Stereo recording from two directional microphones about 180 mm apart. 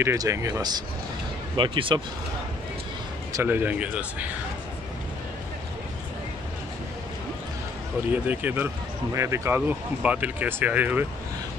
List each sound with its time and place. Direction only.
0.0 s speech: 15° right (ahead or behind)
3.3 s speech: 10° right (ahead or behind)
8.1 s speech: 10° right (ahead or behind)